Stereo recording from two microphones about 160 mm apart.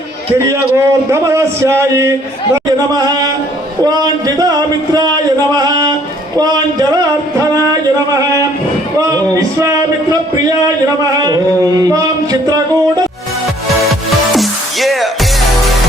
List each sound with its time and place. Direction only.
0.3 s a man's voice: 15° right (ahead or behind)
3.8 s speech: 25° right (ahead or behind)
4.9 s a sound: 25° right (ahead or behind)
8.1 s music: 20° right (ahead or behind)
11.2 s a sound: 25° right (ahead or behind)
14.3 s music: centre (ahead or behind)